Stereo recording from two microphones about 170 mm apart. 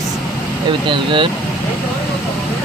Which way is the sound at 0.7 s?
30° right (ahead or behind).